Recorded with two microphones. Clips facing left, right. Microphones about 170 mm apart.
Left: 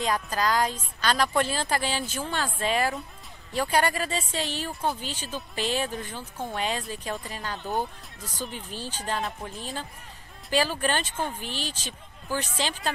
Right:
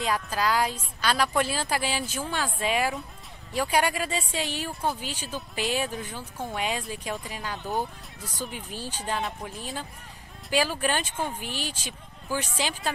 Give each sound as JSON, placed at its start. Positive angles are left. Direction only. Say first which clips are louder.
{"t": 0.0, "sound": "a woman's voice", "louder": "even", "side_deg": -5}
{"t": 9.2, "sound": "a woman's voice", "louder": "even", "side_deg": 0}